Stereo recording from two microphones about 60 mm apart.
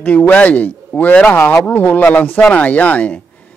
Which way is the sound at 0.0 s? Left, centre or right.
Left.